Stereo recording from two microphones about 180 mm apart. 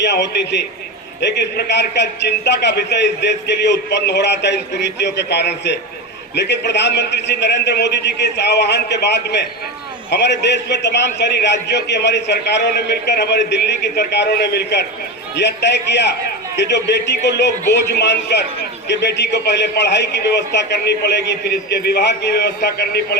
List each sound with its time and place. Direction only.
0.0 s a man's voice: 75° left (ahead or behind)